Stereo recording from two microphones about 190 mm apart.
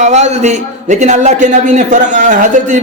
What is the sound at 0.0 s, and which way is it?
A man's voice, 35° right (ahead or behind).